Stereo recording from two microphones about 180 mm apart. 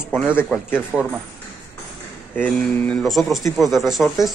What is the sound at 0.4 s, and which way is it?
Speech, 10° left (ahead or behind).